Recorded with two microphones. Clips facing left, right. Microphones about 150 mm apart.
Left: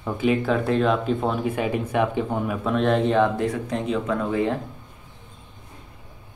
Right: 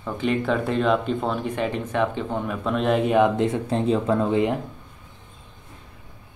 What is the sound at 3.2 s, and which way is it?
Speech, 25° right (ahead or behind).